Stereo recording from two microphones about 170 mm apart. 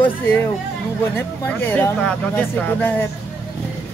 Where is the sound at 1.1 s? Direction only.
10° left (ahead or behind).